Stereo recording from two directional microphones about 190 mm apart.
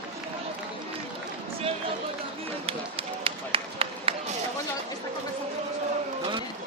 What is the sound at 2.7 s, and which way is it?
Run, 30° right (ahead or behind).